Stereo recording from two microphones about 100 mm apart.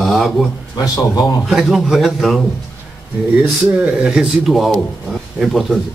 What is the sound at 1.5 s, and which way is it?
Speech, centre (ahead or behind).